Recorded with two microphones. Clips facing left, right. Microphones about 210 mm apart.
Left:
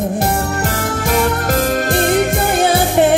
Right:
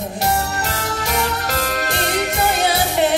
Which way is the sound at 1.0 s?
50° left (ahead or behind).